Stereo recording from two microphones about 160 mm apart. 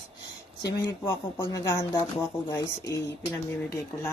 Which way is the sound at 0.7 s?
20° left (ahead or behind).